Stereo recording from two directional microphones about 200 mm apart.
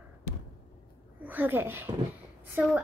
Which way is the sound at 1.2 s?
10° right (ahead or behind).